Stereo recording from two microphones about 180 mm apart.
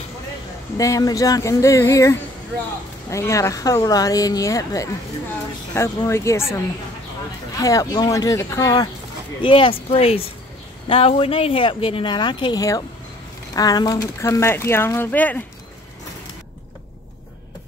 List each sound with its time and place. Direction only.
0.7 s speech: 20° left (ahead or behind)